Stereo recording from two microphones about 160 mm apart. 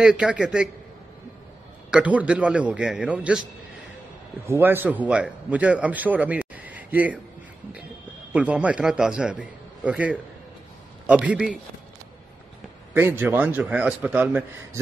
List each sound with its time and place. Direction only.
0.0 s a man's voice: 5° right (ahead or behind)
1.9 s a man's voice: 5° right (ahead or behind)
4.5 s a man's voice: 15° right (ahead or behind)
8.3 s a man's voice: 10° right (ahead or behind)
12.9 s a man's voice: 15° right (ahead or behind)